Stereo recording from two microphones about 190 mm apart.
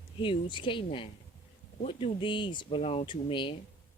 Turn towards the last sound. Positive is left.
turn(degrees=25)  # may be behind; listen again after turning